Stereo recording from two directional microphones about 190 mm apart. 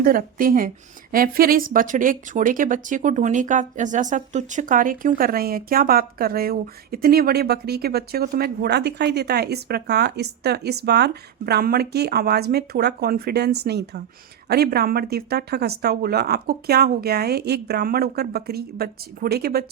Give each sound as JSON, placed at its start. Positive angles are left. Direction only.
{"t": 0.0, "sound": "speech", "side_deg": -50}